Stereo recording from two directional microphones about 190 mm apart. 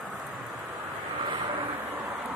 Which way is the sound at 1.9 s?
10° right (ahead or behind).